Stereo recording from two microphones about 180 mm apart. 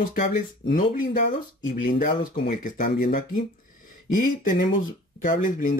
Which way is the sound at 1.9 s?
50° left (ahead or behind).